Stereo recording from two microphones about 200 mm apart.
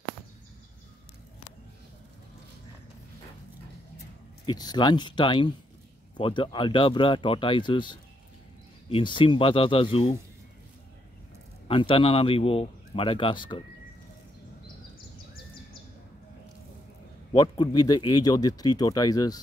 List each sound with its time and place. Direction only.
4.5 s speech: 20° left (ahead or behind)
11.6 s speech: 25° left (ahead or behind)
17.3 s speech: 20° left (ahead or behind)